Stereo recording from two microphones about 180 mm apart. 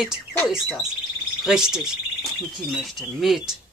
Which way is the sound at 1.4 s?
5° right (ahead or behind).